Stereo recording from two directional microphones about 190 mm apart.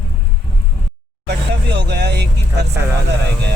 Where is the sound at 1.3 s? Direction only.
65° right (ahead or behind).